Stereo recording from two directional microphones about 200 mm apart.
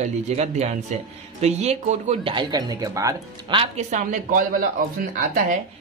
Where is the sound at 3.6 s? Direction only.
35° right (ahead or behind).